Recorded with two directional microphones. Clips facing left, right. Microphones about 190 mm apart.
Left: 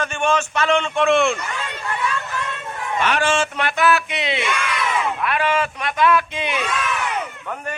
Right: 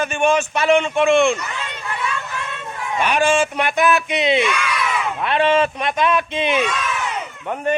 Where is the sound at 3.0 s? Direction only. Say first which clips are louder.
Right 3 dB; 15° right (ahead or behind).